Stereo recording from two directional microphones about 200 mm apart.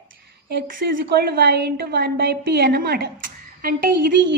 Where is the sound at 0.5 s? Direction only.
55° right (ahead or behind).